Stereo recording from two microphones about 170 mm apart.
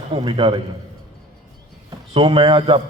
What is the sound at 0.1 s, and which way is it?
Speech, 30° right (ahead or behind).